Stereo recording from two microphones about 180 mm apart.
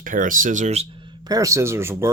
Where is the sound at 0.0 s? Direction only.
50° right (ahead or behind).